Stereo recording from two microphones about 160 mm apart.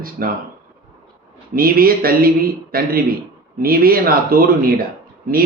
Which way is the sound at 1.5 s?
65° right (ahead or behind).